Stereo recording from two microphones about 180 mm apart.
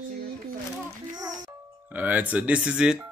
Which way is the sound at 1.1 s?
20° right (ahead or behind).